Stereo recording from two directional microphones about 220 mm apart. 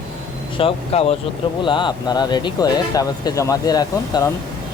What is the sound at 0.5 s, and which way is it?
Speech, 25° left (ahead or behind).